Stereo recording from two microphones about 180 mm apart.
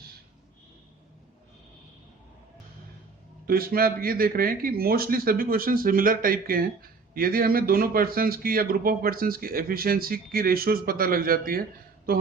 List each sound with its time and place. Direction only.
3.4 s speech: 55° right (ahead or behind)